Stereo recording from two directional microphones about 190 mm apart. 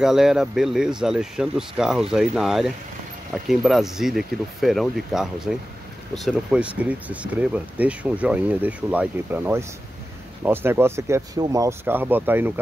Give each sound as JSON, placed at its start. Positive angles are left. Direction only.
{"t": 0.0, "sound": "speech", "side_deg": -5}